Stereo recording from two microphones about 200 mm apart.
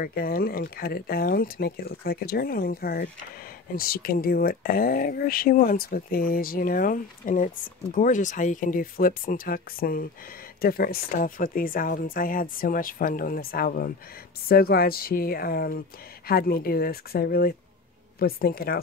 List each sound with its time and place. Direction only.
0.0 s speech: 45° left (ahead or behind)